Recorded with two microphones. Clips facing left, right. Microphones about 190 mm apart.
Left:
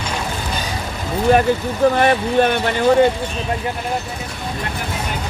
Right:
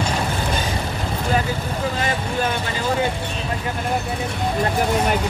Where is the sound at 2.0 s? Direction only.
65° left (ahead or behind).